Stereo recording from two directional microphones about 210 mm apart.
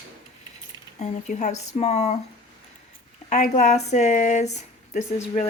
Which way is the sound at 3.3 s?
35° left (ahead or behind).